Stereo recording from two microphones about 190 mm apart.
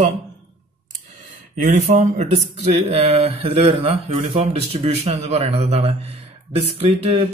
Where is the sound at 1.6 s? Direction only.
40° right (ahead or behind).